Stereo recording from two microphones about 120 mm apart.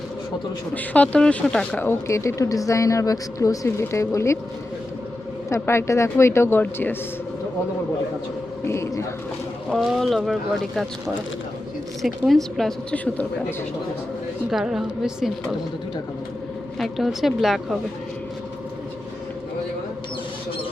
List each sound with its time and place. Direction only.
0.7 s speech: 10° left (ahead or behind)
5.5 s speech: 20° left (ahead or behind)
8.6 s speech: 25° left (ahead or behind)
9.7 s a woman's voice: centre (ahead or behind)
12.0 s a woman's voice: centre (ahead or behind)
14.5 s a woman's voice: 5° right (ahead or behind)
16.7 s a woman's voice: centre (ahead or behind)